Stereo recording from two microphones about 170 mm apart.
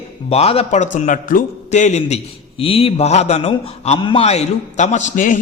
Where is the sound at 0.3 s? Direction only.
35° left (ahead or behind).